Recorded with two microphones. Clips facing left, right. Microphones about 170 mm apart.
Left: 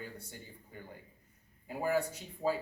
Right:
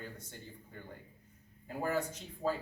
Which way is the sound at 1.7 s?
10° left (ahead or behind).